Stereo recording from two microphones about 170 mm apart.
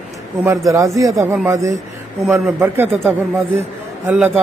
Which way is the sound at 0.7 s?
20° right (ahead or behind).